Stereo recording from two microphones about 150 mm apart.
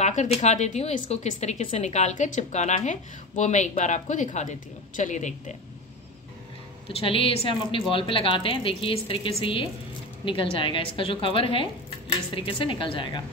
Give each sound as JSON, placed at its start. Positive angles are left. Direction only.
{"t": 0.0, "sound": "speech", "side_deg": 50}
{"t": 6.9, "sound": "a woman's voice", "side_deg": 40}